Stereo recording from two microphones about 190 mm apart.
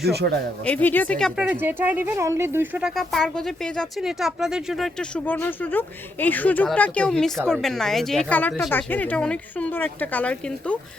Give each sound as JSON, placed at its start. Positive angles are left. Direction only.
{"t": 0.0, "sound": "speech", "side_deg": -60}
{"t": 0.6, "sound": "speech", "side_deg": 10}
{"t": 1.4, "sound": "speech", "side_deg": -10}